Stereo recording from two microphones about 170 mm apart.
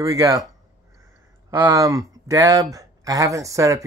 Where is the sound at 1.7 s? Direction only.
20° right (ahead or behind).